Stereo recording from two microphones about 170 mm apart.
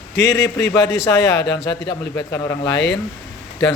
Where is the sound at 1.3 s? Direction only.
85° left.